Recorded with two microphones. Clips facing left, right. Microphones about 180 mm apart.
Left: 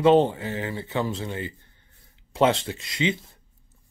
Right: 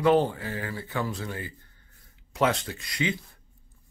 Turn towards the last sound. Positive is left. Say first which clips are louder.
# left 4 dB
turn(degrees=25)  # may be behind; listen again after turning